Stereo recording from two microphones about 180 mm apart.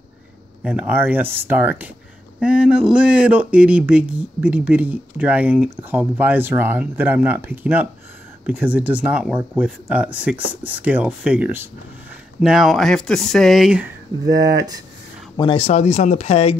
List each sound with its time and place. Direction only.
0.7 s speech: 10° right (ahead or behind)
14.3 s speech: 20° right (ahead or behind)
15.3 s speech: 30° left (ahead or behind)